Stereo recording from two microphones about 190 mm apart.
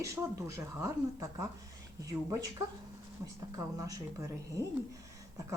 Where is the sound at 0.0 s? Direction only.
15° right (ahead or behind).